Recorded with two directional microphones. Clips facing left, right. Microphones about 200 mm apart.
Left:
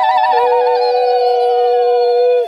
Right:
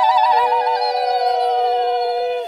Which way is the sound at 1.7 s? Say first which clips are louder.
Left 8 dB; 50° left (ahead or behind).